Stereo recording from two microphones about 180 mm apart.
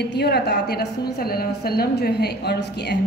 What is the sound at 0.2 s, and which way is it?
A woman's voice, 65° left (ahead or behind).